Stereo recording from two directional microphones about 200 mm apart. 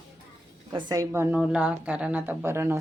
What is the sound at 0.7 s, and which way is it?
Speech, 15° right (ahead or behind).